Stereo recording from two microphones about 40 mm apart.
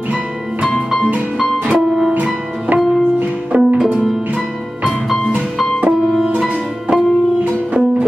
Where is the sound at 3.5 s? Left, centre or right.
Right.